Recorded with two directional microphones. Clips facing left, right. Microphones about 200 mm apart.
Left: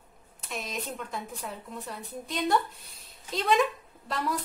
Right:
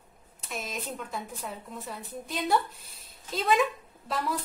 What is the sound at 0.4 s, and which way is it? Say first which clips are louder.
A woman's voice: left 1 dB; centre (ahead or behind).